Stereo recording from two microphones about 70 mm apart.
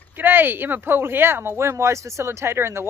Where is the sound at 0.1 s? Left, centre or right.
Right.